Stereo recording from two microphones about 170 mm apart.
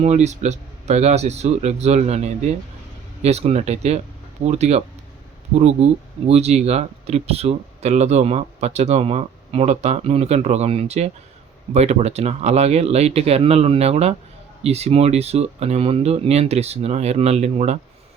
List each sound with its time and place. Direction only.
0.0 s speech: 45° right (ahead or behind)